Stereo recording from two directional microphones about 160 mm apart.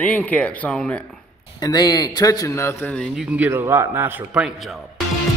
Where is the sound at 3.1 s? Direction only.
10° right (ahead or behind).